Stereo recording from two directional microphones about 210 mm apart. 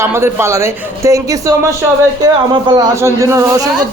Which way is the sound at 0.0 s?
10° right (ahead or behind).